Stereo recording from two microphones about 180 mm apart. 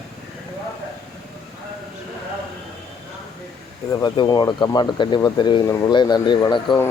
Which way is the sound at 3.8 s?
25° left (ahead or behind).